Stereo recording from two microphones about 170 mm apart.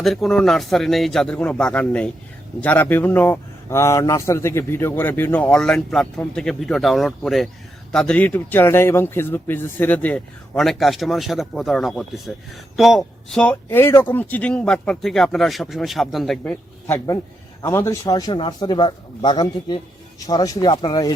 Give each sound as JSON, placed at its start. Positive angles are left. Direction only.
{"t": 0.0, "sound": "a man's voice", "side_deg": 0}